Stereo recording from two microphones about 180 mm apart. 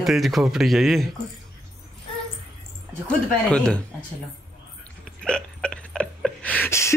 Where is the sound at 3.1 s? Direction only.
5° left (ahead or behind).